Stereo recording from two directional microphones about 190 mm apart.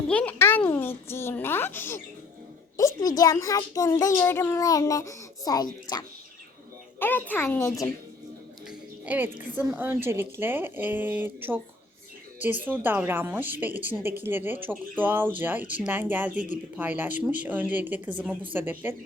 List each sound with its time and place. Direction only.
0.1 s a child's voice: 5° left (ahead or behind)
7.0 s a child's voice: 10° left (ahead or behind)
9.0 s a woman's voice: 10° right (ahead or behind)